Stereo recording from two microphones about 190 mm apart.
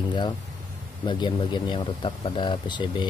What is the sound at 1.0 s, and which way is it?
Speech, 25° left (ahead or behind).